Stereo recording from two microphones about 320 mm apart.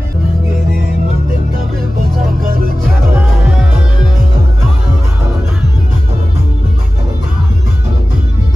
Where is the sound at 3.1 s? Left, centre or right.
Centre.